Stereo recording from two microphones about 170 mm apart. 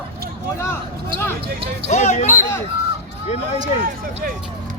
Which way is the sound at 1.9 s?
40° left (ahead or behind).